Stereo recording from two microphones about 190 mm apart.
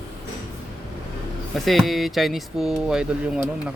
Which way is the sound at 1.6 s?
Centre (ahead or behind).